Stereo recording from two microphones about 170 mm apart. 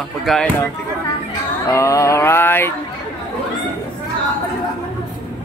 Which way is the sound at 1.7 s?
15° left (ahead or behind).